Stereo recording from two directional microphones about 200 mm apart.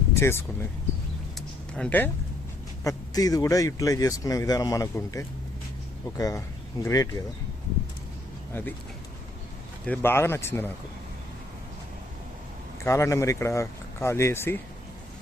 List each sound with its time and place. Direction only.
0.2 s speech: 10° left (ahead or behind)
1.4 s a sound: 5° left (ahead or behind)
2.8 s speech: 15° left (ahead or behind)
8.5 s speech: 10° left (ahead or behind)
9.8 s speech: 10° left (ahead or behind)
12.8 s speech: 15° left (ahead or behind)